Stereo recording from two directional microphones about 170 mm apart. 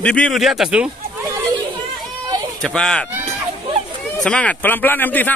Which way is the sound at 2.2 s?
25° right (ahead or behind).